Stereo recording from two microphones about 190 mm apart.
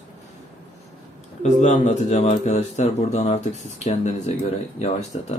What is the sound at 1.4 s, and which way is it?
Speech, 40° left (ahead or behind).